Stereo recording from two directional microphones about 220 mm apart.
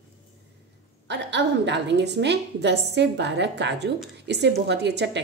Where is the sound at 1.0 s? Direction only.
50° right (ahead or behind).